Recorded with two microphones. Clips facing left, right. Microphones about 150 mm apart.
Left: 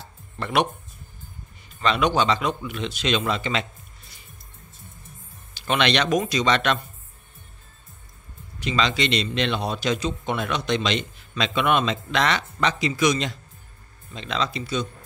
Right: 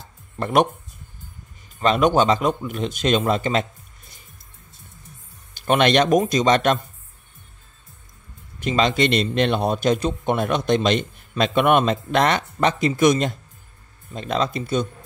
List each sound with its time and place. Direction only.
0.0 s music: 45° right (ahead or behind)
1.8 s a man's voice: 45° right (ahead or behind)
5.5 s a man's voice: 50° right (ahead or behind)
8.5 s a man's voice: 50° right (ahead or behind)